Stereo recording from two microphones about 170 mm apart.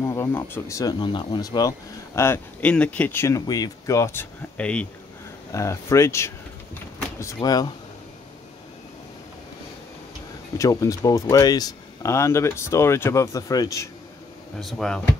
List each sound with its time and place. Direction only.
0.0 s speech: 15° left (ahead or behind)
5.5 s a sound: 15° left (ahead or behind)
7.3 s speech: 25° left (ahead or behind)
10.6 s speech: 20° left (ahead or behind)
14.6 s speech: centre (ahead or behind)